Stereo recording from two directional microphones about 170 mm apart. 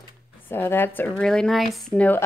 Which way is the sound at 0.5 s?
15° left (ahead or behind).